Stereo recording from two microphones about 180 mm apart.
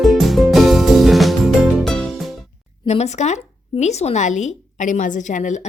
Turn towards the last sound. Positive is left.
turn(degrees=45)  # may be behind; listen again after turning